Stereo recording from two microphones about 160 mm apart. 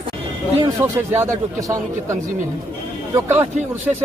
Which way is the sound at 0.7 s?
15° right (ahead or behind).